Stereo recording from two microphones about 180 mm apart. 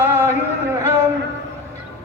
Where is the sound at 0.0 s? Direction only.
10° right (ahead or behind).